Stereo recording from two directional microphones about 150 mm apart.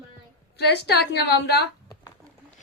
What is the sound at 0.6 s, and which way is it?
A woman's voice, 90° left.